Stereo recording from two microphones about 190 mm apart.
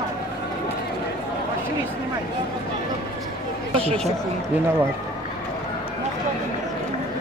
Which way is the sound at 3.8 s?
30° right (ahead or behind).